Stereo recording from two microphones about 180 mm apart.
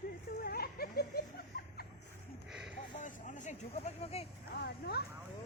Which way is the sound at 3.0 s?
45° left (ahead or behind).